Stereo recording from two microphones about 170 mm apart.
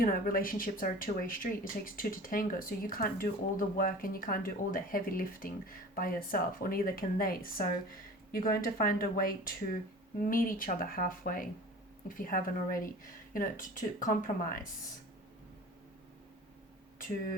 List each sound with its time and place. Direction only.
0.0 s speech: 60° left (ahead or behind)